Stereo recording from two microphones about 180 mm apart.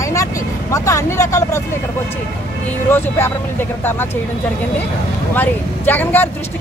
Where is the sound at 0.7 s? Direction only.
15° left (ahead or behind).